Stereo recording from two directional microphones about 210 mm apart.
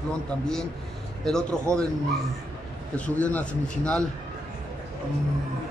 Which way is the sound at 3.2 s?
5° left (ahead or behind).